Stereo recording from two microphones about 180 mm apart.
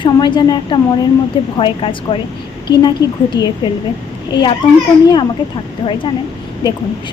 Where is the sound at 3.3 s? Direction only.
25° left (ahead or behind).